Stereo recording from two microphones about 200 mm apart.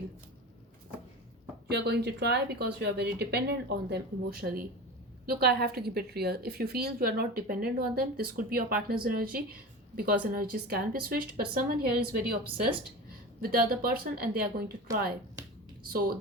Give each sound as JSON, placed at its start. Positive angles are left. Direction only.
{"t": 1.7, "sound": "a woman's voice", "side_deg": -55}
{"t": 14.9, "sound": "speech", "side_deg": -15}
{"t": 15.9, "sound": "a woman's voice", "side_deg": -50}